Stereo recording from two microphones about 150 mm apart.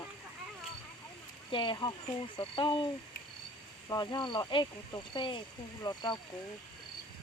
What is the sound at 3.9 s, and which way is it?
Speech, 30° left (ahead or behind).